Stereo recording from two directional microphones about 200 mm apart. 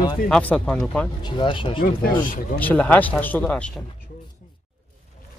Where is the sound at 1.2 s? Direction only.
25° left (ahead or behind).